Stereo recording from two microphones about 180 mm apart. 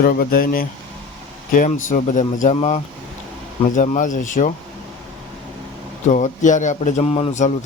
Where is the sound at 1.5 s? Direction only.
45° left (ahead or behind).